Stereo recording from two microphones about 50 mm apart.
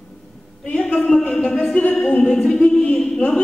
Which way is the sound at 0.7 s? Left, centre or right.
Left.